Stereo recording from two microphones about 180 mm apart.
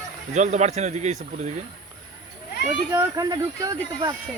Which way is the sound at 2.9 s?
20° right (ahead or behind).